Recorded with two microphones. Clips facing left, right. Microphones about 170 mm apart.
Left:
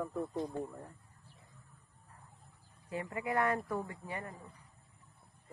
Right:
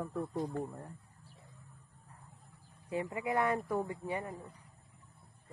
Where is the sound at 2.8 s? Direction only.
20° right (ahead or behind).